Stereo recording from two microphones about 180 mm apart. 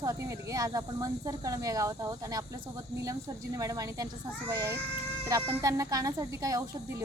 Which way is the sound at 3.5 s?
20° right (ahead or behind).